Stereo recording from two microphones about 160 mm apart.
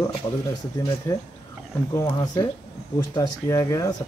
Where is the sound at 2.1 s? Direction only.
25° left (ahead or behind).